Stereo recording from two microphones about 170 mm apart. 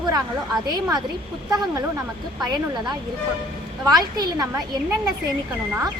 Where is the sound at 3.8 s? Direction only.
25° right (ahead or behind).